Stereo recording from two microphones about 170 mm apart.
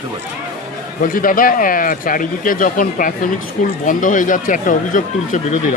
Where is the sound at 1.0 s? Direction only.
55° left (ahead or behind).